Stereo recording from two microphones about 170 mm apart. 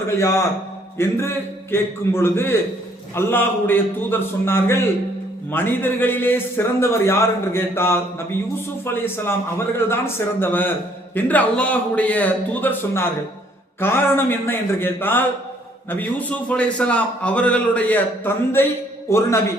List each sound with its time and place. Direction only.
0.2 s a man's voice: 15° left (ahead or behind)
9.0 s a man's voice: 15° left (ahead or behind)